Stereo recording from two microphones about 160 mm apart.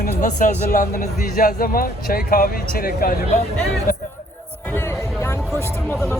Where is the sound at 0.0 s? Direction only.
50° left (ahead or behind).